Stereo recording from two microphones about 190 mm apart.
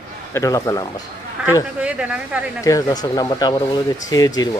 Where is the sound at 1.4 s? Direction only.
5° right (ahead or behind).